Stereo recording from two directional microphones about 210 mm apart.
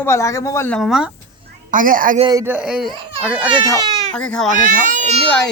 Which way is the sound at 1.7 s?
40° right (ahead or behind).